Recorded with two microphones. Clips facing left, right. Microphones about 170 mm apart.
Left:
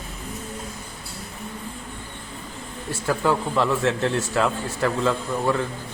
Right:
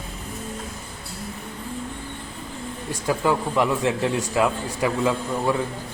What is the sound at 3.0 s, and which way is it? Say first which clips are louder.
A man's voice: even; 15° right (ahead or behind).